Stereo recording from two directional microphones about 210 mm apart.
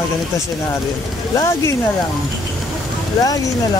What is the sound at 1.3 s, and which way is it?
Speech, 15° left (ahead or behind).